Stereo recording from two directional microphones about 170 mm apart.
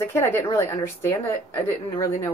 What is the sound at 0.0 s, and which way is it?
A woman's voice, 15° left (ahead or behind).